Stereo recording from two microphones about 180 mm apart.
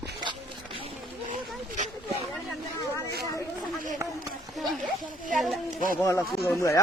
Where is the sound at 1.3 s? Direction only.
45° right (ahead or behind).